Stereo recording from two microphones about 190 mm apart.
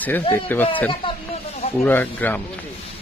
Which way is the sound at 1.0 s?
30° left (ahead or behind).